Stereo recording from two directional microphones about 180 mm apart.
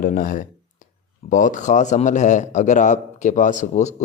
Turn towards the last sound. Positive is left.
turn(degrees=40)  # may be behind; listen again after turning